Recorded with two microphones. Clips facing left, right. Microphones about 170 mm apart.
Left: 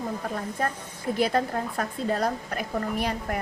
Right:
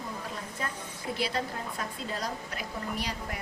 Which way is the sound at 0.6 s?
50° left (ahead or behind).